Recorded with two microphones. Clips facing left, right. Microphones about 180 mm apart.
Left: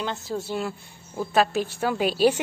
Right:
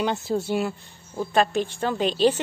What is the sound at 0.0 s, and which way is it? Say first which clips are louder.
Speech: right 5 dB; 15° right (ahead or behind).